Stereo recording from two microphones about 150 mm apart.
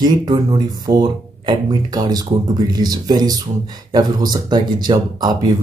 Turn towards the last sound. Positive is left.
turn(degrees=-25)  # may be behind; listen again after turning